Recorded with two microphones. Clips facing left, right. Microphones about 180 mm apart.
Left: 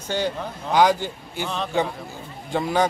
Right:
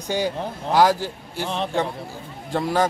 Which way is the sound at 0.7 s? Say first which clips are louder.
Even; 5° right (ahead or behind).